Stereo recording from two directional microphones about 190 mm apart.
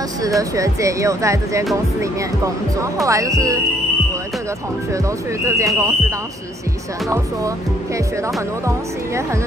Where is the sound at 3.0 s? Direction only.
15° right (ahead or behind).